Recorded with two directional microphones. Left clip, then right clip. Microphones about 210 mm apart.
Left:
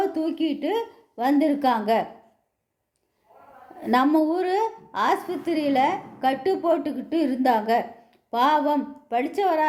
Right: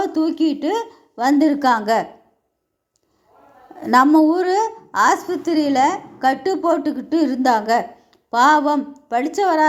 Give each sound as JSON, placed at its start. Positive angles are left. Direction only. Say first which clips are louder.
{"t": 0.0, "sound": "a woman's voice", "louder": "right 6 dB", "side_deg": -20}
{"t": 3.8, "sound": "a woman's voice", "louder": "right 7 dB", "side_deg": -20}